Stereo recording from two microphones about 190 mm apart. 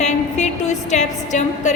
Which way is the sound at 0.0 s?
40° left (ahead or behind).